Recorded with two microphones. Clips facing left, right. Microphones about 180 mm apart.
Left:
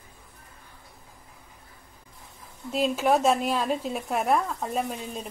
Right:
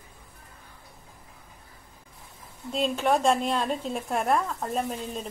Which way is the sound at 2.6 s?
5° left (ahead or behind).